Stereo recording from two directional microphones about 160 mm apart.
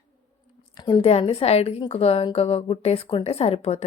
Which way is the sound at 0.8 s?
25° left (ahead or behind).